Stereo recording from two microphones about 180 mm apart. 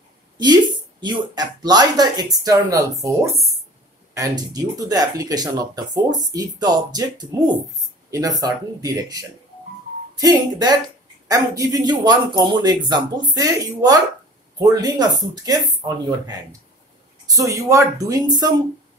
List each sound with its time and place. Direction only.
1.0 s speech: 25° right (ahead or behind)
17.3 s speech: 20° right (ahead or behind)